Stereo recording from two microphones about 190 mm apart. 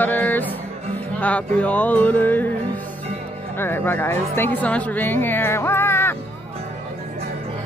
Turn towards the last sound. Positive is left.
turn(degrees=10)  # may be behind; listen again after turning